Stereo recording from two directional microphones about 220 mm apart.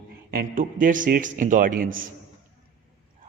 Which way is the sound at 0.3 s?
40° right (ahead or behind).